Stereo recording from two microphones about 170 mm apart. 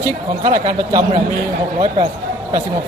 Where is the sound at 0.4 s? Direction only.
35° right (ahead or behind).